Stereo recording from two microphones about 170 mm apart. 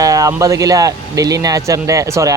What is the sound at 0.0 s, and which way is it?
Speech, 20° right (ahead or behind).